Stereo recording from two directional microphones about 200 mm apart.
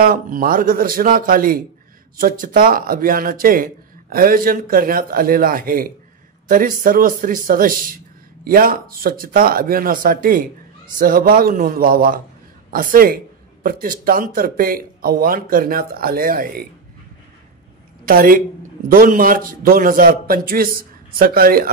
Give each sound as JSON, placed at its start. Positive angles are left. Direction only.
{"t": 0.0, "sound": "speech", "side_deg": -45}
{"t": 18.0, "sound": "speech", "side_deg": -45}